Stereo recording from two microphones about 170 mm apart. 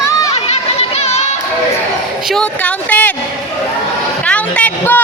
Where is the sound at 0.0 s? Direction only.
20° left (ahead or behind).